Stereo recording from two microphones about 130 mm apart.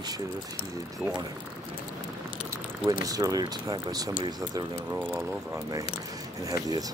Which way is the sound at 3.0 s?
25° right (ahead or behind).